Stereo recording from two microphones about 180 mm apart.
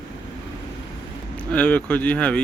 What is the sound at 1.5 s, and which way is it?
Speech, 10° left (ahead or behind).